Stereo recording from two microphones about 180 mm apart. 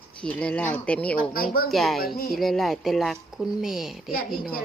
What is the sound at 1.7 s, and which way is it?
Speech, centre (ahead or behind).